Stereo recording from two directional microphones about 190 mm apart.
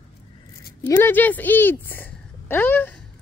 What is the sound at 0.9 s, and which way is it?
Speech, 10° left (ahead or behind).